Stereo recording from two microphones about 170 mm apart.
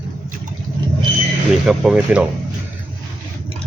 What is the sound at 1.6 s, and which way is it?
Speech, centre (ahead or behind).